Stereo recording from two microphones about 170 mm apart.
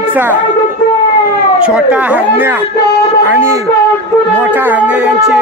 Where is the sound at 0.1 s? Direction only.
10° right (ahead or behind).